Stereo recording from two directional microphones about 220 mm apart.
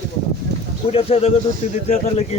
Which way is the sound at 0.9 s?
25° left (ahead or behind).